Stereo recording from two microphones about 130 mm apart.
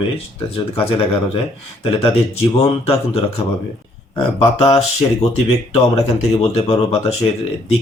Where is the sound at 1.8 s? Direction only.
45° left (ahead or behind).